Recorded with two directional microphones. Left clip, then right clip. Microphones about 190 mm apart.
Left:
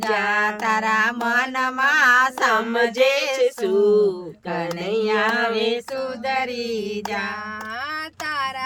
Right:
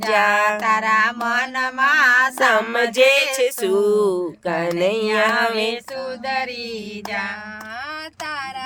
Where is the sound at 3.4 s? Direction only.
50° right (ahead or behind).